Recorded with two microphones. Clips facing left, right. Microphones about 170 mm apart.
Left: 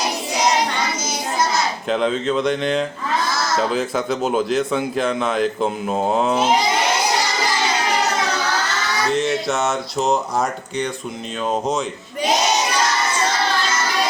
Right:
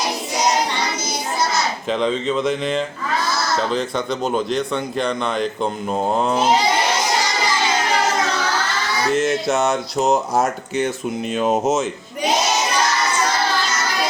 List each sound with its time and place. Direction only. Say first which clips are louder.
1.9 s speech: left 1 dB; centre (ahead or behind)
9.1 s speech: right 3 dB; centre (ahead or behind)
11.3 s speech: right 3 dB; 20° right (ahead or behind)